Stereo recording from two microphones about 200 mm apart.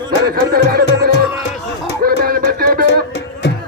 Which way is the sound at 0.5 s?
50° right (ahead or behind).